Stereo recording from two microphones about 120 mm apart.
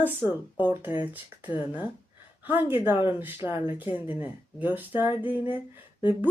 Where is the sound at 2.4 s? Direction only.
15° right (ahead or behind).